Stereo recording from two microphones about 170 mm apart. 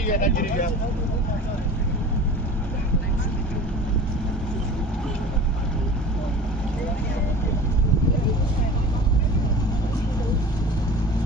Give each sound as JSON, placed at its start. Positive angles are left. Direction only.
{"t": 0.1, "sound": "speech", "side_deg": 50}